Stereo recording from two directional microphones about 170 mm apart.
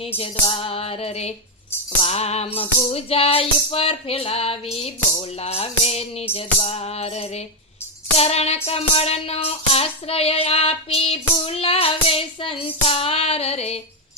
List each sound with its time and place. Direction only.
0.2 s child singing: 35° left (ahead or behind)